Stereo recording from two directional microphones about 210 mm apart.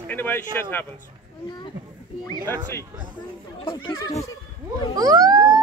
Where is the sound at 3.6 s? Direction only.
25° left (ahead or behind).